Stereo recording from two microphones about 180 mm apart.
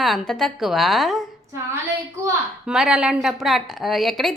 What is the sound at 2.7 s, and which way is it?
A woman's voice, 5° right (ahead or behind).